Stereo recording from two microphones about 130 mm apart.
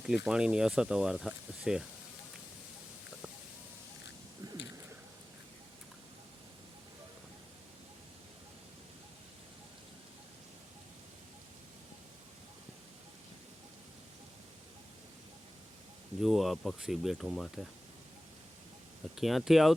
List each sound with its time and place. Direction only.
0.0 s speech: 5° right (ahead or behind)
16.2 s a sound: centre (ahead or behind)
19.1 s speech: centre (ahead or behind)